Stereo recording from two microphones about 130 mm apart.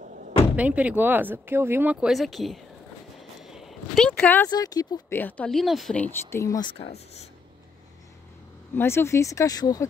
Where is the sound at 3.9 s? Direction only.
10° left (ahead or behind).